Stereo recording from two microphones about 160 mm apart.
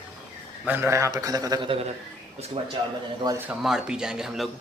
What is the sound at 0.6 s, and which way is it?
A man's voice, 15° right (ahead or behind).